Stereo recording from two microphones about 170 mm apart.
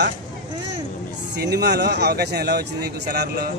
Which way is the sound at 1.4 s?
80° right.